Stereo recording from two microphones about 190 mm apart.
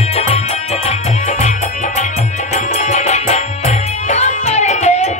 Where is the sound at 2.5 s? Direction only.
35° left (ahead or behind).